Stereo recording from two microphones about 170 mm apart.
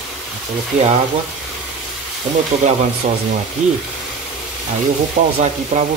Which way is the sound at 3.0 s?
50° right (ahead or behind).